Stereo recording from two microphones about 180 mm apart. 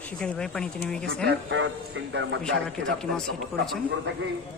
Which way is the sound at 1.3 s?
90° right.